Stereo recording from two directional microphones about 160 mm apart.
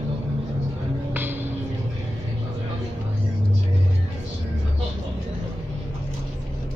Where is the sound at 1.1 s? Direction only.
10° right (ahead or behind).